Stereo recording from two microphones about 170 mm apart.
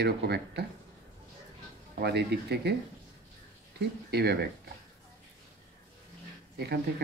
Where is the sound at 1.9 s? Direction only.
75° right (ahead or behind).